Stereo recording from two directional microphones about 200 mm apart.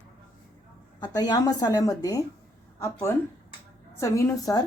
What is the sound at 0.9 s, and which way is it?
A woman's voice, 20° left (ahead or behind).